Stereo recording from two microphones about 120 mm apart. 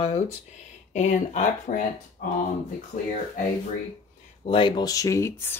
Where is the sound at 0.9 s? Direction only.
85° left.